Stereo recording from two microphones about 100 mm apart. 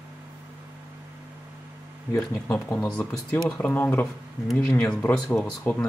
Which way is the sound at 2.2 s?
5° left (ahead or behind).